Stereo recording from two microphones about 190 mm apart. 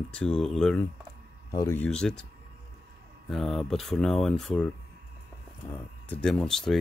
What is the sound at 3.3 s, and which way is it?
Speech, centre (ahead or behind).